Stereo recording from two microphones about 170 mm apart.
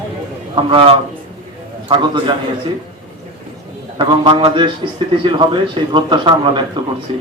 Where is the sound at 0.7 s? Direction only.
30° right (ahead or behind).